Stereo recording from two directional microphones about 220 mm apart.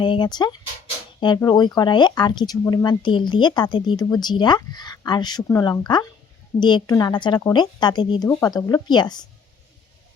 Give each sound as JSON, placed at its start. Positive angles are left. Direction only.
{"t": 0.0, "sound": "speech", "side_deg": 20}